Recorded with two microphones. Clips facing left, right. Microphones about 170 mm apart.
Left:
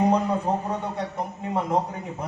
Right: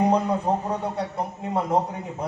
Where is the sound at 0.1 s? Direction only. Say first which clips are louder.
Right 1 dB; 10° right (ahead or behind).